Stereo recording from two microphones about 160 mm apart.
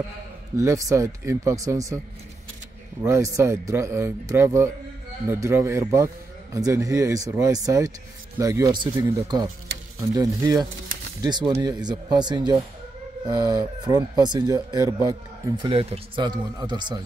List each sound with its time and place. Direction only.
0.6 s a man's voice: 20° right (ahead or behind)
3.0 s a man's voice: 20° right (ahead or behind)